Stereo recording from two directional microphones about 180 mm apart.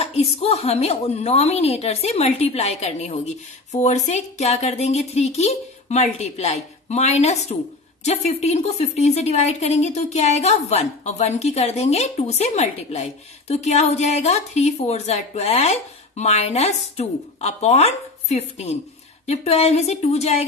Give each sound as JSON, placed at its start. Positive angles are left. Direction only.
{"t": 0.0, "sound": "a woman's voice", "side_deg": 35}